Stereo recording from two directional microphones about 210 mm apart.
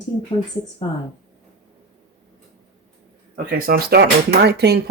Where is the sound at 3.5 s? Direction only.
45° right (ahead or behind).